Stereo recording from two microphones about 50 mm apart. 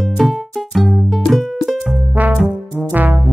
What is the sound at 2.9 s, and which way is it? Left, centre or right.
Music, right.